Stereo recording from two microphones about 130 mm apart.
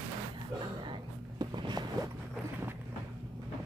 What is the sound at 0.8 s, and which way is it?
Music, 35° right (ahead or behind).